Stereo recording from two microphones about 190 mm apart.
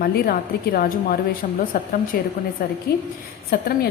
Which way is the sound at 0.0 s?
55° left (ahead or behind).